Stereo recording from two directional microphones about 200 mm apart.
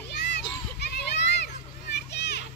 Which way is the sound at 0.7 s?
55° left (ahead or behind).